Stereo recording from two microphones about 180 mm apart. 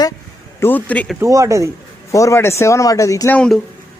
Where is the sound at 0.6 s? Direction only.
10° left (ahead or behind).